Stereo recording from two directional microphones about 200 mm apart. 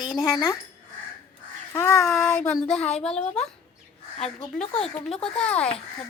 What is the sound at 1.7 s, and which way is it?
Child singing, 15° left (ahead or behind).